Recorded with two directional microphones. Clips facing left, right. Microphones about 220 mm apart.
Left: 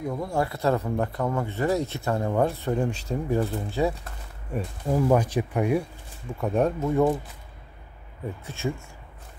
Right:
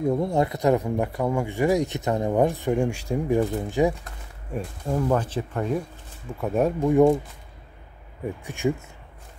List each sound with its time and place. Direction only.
0.0 s speech: 25° right (ahead or behind)
4.6 s speech: 5° left (ahead or behind)
6.4 s speech: 5° right (ahead or behind)
8.5 s speech: 15° right (ahead or behind)